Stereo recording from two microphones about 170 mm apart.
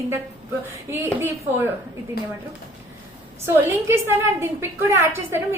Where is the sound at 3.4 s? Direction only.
15° right (ahead or behind).